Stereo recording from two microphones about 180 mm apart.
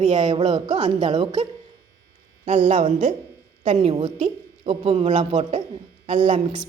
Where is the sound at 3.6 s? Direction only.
35° right (ahead or behind).